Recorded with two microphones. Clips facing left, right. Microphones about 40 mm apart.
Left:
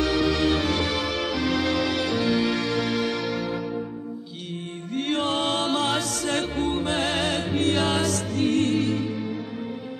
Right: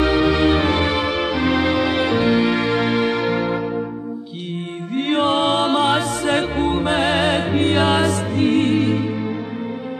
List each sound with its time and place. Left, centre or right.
0.0 s music: right
4.9 s music: right